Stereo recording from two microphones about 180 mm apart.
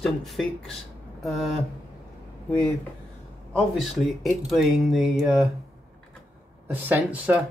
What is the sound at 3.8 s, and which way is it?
Speech, centre (ahead or behind).